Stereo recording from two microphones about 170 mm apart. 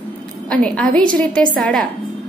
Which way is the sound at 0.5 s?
5° left (ahead or behind).